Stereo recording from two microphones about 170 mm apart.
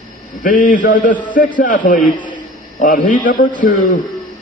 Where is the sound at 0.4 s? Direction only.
55° left (ahead or behind).